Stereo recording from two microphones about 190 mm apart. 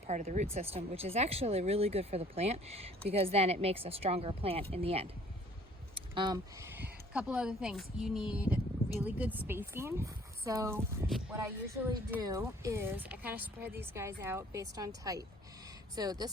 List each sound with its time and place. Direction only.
0.1 s speech: 40° right (ahead or behind); by 16.3 s 20° right (ahead or behind)